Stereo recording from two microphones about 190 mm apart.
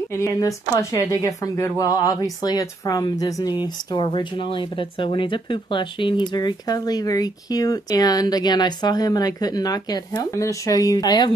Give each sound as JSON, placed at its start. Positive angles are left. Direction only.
{"t": 0.1, "sound": "speech", "side_deg": 15}